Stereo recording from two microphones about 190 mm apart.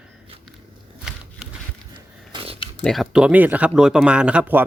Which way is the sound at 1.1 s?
5° right (ahead or behind).